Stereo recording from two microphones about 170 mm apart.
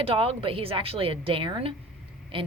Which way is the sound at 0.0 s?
35° right (ahead or behind).